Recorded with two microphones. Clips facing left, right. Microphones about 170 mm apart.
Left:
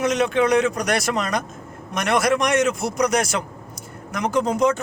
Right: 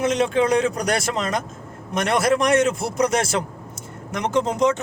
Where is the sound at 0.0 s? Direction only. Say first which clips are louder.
Even; 30° right (ahead or behind).